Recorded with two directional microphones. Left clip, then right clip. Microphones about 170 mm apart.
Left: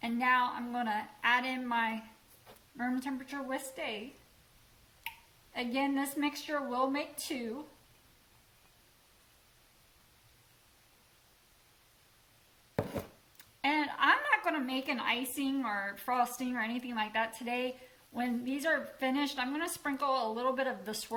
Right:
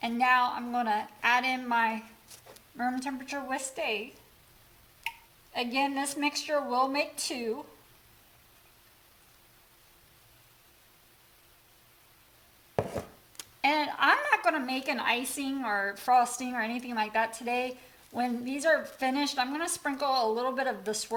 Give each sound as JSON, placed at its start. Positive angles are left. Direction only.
{"t": 0.0, "sound": "a woman's voice", "side_deg": -55}
{"t": 5.5, "sound": "a woman's voice", "side_deg": -50}
{"t": 13.6, "sound": "a woman's voice", "side_deg": -55}